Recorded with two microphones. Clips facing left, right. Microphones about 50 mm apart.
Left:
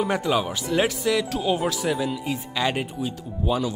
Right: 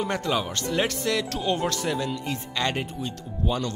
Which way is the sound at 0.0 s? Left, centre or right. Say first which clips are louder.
Left 3 dB; centre.